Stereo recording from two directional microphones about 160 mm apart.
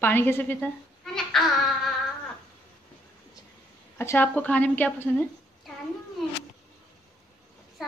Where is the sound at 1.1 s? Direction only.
Centre (ahead or behind).